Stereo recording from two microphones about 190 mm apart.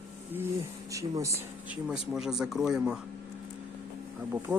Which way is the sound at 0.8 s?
15° right (ahead or behind).